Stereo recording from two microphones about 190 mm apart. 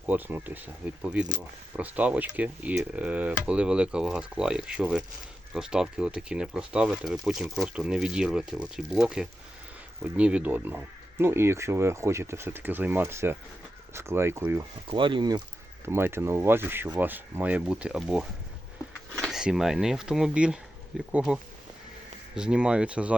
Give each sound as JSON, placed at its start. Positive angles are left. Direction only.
{"t": 0.0, "sound": "speech", "side_deg": -10}
{"t": 14.8, "sound": "speech", "side_deg": -25}
{"t": 15.9, "sound": "speech", "side_deg": -10}
{"t": 22.4, "sound": "speech", "side_deg": -5}